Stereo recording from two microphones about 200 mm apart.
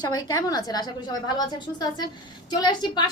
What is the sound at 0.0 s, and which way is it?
A woman's voice, 20° left (ahead or behind).